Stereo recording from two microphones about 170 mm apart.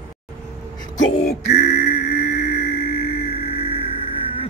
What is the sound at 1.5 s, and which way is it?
Music, 45° left (ahead or behind).